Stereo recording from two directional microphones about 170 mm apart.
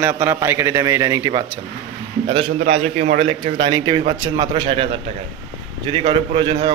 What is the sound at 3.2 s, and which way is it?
A man's voice, 30° right (ahead or behind).